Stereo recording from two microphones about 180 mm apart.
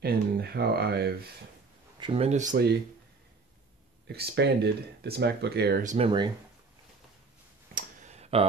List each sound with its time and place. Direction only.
0.0 s speech: 65° right (ahead or behind)
2.0 s speech: 30° right (ahead or behind)
4.1 s speech: 65° right (ahead or behind)
5.9 s speech: 30° right (ahead or behind)
7.7 s a sound: 40° right (ahead or behind)